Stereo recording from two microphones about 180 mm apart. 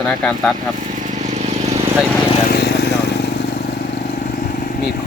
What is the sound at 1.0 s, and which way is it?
Vehicle, 40° right (ahead or behind).